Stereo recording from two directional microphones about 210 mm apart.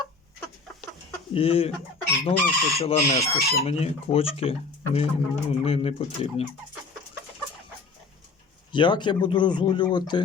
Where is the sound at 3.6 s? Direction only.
30° left (ahead or behind).